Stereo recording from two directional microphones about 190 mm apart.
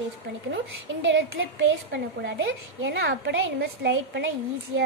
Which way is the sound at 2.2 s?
65° right (ahead or behind).